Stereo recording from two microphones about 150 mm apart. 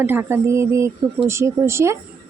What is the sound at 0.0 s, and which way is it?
A woman's voice, 15° right (ahead or behind).